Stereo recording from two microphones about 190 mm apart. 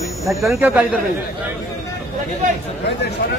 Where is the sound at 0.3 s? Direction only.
Centre (ahead or behind).